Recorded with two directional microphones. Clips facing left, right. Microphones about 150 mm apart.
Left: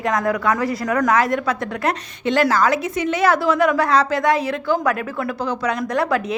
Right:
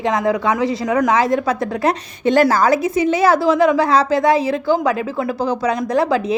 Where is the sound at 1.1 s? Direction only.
30° right (ahead or behind).